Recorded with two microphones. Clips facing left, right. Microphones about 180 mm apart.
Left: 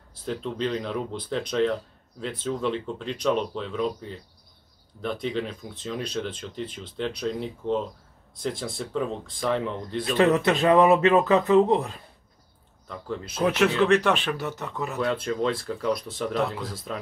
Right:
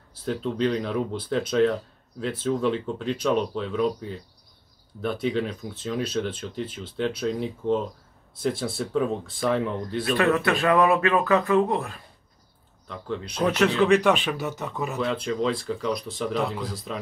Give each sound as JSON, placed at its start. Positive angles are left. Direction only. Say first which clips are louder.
{"t": 0.1, "sound": "speech", "louder": "right 3 dB", "side_deg": 0}
{"t": 5.0, "sound": "speech", "louder": "right 3 dB", "side_deg": -5}
{"t": 10.0, "sound": "speech", "louder": "left 2 dB", "side_deg": 20}
{"t": 12.8, "sound": "speech", "louder": "right 1 dB", "side_deg": 0}